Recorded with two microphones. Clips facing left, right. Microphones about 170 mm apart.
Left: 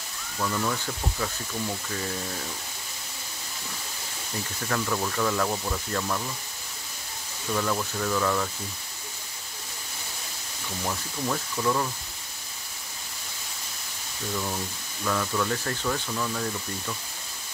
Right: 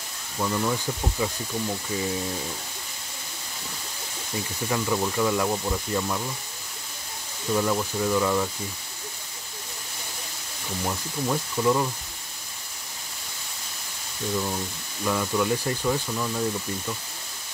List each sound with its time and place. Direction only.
0.4 s speech: 15° right (ahead or behind)
4.6 s speech: 15° right (ahead or behind)
7.5 s speech: 15° right (ahead or behind)
10.8 s speech: 15° right (ahead or behind)
15.0 s speech: 15° right (ahead or behind)